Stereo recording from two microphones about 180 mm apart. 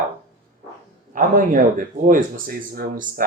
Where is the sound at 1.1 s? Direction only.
50° right (ahead or behind).